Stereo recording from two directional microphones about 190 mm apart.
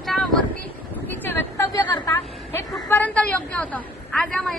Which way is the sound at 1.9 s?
15° left (ahead or behind).